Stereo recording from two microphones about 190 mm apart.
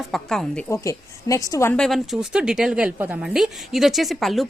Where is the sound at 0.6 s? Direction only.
15° left (ahead or behind).